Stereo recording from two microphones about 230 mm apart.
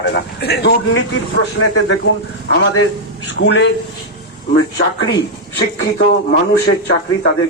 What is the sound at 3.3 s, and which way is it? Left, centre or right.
Speech, left.